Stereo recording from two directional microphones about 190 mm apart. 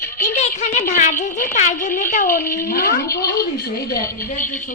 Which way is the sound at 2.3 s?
15° left (ahead or behind).